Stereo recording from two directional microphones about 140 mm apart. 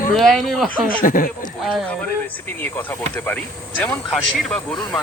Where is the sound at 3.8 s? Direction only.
10° left (ahead or behind).